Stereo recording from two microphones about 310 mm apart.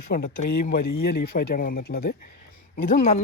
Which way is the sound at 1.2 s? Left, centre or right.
Left.